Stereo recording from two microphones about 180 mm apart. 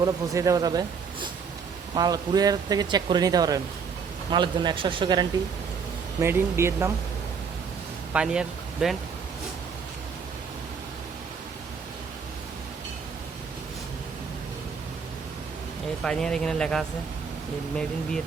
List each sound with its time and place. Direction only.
0.0 s speech: 20° right (ahead or behind)
6.1 s speech: 15° right (ahead or behind)
8.1 s speech: 5° right (ahead or behind)
16.0 s a man's voice: 5° left (ahead or behind)